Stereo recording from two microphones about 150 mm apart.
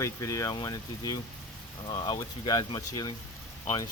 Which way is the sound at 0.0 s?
20° left (ahead or behind).